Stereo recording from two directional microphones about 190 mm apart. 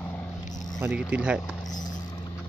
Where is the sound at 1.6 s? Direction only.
20° left (ahead or behind).